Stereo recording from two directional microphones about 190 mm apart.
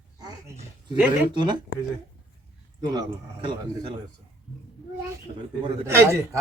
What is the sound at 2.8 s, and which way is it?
Speech, 25° right (ahead or behind).